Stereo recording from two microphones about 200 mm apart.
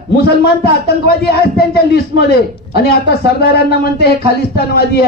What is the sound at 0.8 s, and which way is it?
Speech, 50° left (ahead or behind).